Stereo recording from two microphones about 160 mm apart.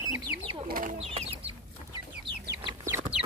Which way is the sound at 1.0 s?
40° right (ahead or behind).